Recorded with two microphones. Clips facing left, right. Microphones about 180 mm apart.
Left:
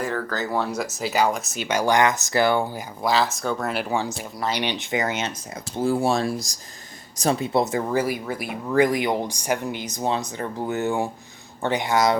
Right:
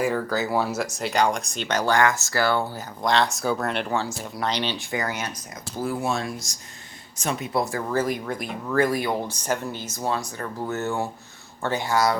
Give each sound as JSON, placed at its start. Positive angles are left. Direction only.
{"t": 0.0, "sound": "speech", "side_deg": -10}